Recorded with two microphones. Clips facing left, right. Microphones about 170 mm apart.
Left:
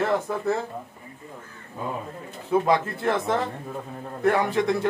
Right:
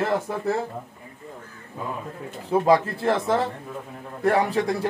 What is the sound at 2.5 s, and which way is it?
Speech, 30° right (ahead or behind).